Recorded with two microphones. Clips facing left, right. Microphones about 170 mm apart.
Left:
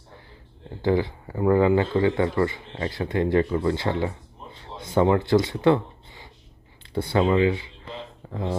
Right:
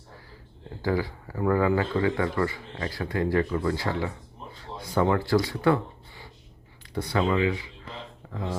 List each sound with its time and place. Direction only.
0.8 s speech: 25° left (ahead or behind)